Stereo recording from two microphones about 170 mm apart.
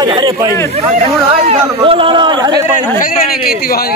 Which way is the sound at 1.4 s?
35° right (ahead or behind).